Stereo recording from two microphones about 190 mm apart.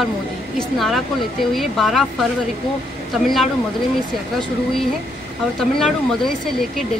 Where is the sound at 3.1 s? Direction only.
Centre (ahead or behind).